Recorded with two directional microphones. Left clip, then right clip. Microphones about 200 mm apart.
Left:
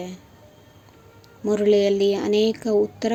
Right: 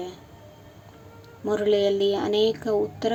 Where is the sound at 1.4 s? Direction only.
30° left (ahead or behind).